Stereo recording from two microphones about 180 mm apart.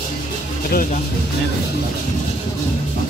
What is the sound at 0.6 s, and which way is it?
Speech, 50° left (ahead or behind).